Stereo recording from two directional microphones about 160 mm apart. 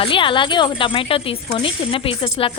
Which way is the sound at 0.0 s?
30° left (ahead or behind).